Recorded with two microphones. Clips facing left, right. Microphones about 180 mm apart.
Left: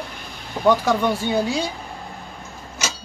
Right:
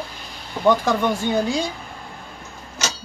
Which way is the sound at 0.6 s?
10° left (ahead or behind).